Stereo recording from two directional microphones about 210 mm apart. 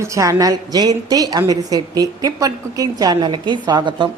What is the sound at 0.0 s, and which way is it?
A woman's voice, 15° right (ahead or behind).